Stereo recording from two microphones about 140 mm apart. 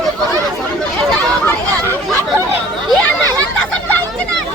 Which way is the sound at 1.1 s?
10° left (ahead or behind).